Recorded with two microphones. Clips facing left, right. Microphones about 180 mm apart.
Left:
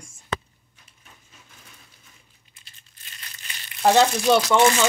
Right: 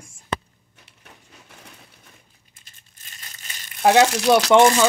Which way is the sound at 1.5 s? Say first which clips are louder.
Right 8 dB; 70° right (ahead or behind).